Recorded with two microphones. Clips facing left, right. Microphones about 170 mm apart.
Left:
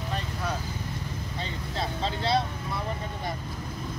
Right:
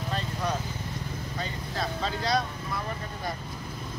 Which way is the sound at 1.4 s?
25° left (ahead or behind).